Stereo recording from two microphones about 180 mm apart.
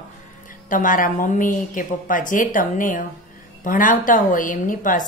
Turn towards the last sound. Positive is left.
turn(degrees=50)  # may be behind; listen again after turning